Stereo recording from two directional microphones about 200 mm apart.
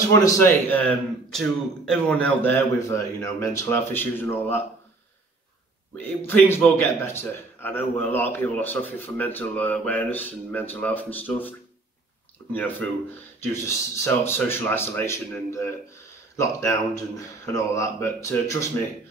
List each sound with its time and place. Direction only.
0.4 s a man's voice: 10° left (ahead or behind)
5.9 s a man's voice: 10° left (ahead or behind)
12.5 s a man's voice: 10° left (ahead or behind)